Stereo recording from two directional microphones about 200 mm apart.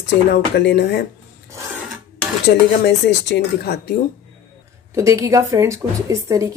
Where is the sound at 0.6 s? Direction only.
55° left (ahead or behind).